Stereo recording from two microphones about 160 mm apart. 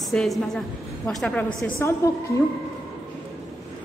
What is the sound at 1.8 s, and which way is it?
Speech, 15° left (ahead or behind).